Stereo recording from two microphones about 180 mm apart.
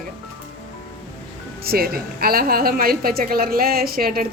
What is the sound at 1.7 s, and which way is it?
A woman's voice, 55° right (ahead or behind).